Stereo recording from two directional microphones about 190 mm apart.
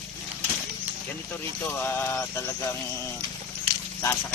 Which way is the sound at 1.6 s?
10° left (ahead or behind).